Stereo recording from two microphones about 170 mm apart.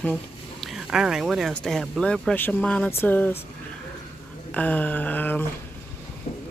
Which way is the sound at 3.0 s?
10° left (ahead or behind).